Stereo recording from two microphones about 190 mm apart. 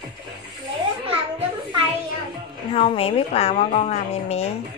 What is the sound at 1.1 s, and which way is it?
Children playing, 30° right (ahead or behind).